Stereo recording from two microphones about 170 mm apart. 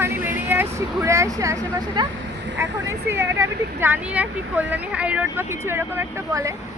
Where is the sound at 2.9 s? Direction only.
15° right (ahead or behind).